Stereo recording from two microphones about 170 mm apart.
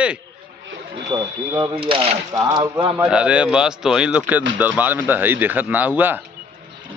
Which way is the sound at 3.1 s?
5° right (ahead or behind).